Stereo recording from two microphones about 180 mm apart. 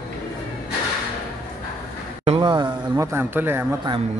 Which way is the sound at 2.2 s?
30° right (ahead or behind).